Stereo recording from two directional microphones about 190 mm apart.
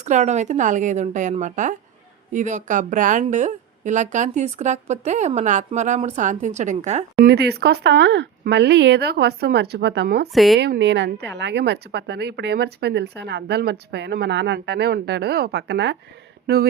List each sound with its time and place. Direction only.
0.0 s speech: 40° right (ahead or behind)
7.3 s speech: 60° right (ahead or behind)
10.3 s a woman's voice: centre (ahead or behind)
10.6 s speech: 65° right (ahead or behind)